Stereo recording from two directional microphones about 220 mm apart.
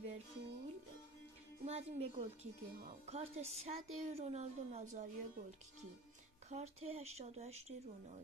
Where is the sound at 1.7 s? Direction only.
30° right (ahead or behind).